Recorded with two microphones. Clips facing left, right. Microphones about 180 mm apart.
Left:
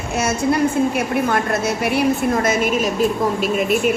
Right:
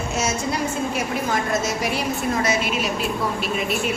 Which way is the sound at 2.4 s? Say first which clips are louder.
Left 5 dB; 45° left (ahead or behind).